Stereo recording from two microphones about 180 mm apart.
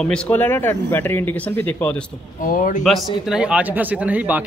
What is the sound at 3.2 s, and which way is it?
Speech, 5° right (ahead or behind).